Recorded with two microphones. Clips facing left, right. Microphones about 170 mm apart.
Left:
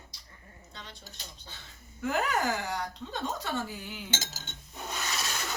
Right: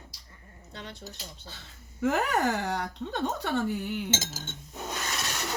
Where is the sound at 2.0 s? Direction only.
75° right (ahead or behind).